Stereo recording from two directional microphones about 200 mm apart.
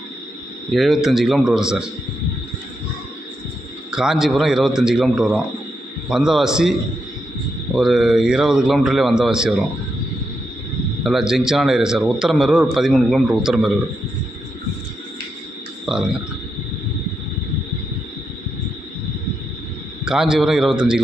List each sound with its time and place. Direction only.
0.7 s a man's voice: centre (ahead or behind)
3.9 s a man's voice: 5° right (ahead or behind)
7.8 s a man's voice: centre (ahead or behind)
11.0 s a man's voice: centre (ahead or behind)
15.9 s speech: centre (ahead or behind)
20.1 s a man's voice: 5° right (ahead or behind)